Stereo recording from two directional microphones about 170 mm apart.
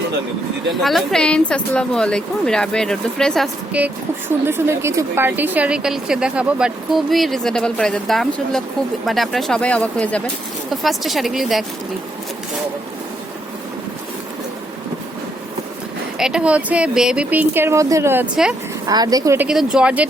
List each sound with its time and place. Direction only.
0.8 s a woman's voice: centre (ahead or behind)
16.1 s speech: 5° right (ahead or behind)
18.9 s a woman's voice: 20° right (ahead or behind)
19.5 s a woman's voice: 5° right (ahead or behind)